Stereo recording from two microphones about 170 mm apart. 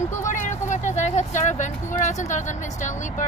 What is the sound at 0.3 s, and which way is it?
Speech, 45° left (ahead or behind).